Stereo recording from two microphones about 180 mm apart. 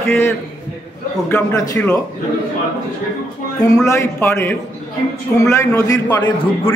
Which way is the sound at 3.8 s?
15° left (ahead or behind).